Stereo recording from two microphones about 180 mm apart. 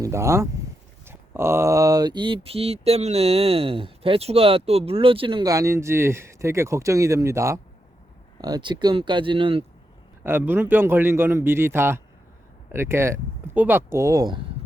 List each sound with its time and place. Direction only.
0.0 s a man's voice: 15° right (ahead or behind)
1.0 s a sound: 15° right (ahead or behind); by 9.6 s 30° right (ahead or behind)
10.2 s a man's voice: 10° right (ahead or behind)